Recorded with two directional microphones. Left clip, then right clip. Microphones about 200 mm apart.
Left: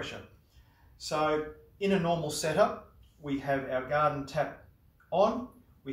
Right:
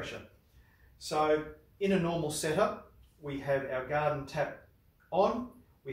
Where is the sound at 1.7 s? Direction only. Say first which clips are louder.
Left 2 dB; centre (ahead or behind).